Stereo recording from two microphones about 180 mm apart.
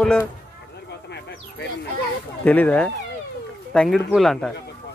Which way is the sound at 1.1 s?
70° left (ahead or behind).